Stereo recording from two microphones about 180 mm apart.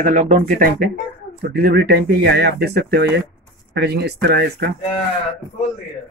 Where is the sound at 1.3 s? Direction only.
60° right (ahead or behind).